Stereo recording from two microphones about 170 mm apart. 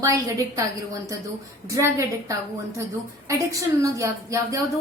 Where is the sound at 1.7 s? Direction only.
20° right (ahead or behind).